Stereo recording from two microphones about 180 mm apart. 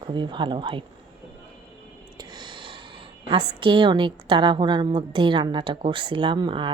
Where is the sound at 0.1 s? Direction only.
25° right (ahead or behind).